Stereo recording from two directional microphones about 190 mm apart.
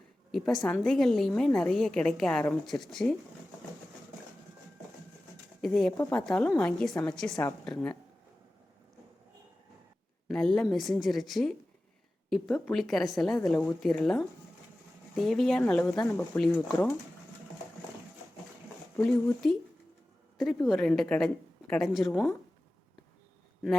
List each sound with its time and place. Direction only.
0.3 s a woman's voice: centre (ahead or behind)
5.6 s a woman's voice: centre (ahead or behind)
10.2 s a woman's voice: centre (ahead or behind)
20.7 s a woman's voice: centre (ahead or behind)